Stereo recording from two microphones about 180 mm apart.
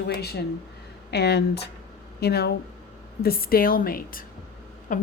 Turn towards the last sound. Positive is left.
turn(degrees=45)  # may be behind; listen again after turning